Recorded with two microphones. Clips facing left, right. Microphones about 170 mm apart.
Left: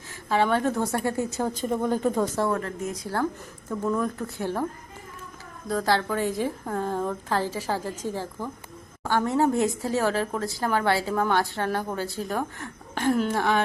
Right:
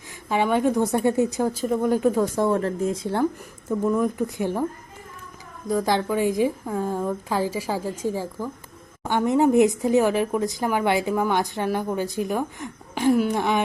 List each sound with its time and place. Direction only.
0.3 s speech: 15° right (ahead or behind)
1.5 s speech: 5° right (ahead or behind)
2.5 s speech: 30° right (ahead or behind); by 4.6 s 15° right (ahead or behind)
5.6 s speech: 15° right (ahead or behind)